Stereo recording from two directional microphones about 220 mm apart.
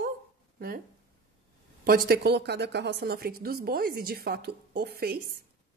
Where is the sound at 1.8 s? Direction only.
45° right (ahead or behind).